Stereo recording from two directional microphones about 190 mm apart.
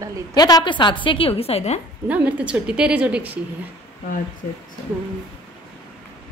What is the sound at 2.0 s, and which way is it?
A woman's voice, 10° right (ahead or behind).